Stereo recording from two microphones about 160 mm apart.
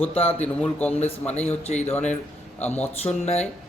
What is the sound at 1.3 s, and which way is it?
Speech, 40° left (ahead or behind).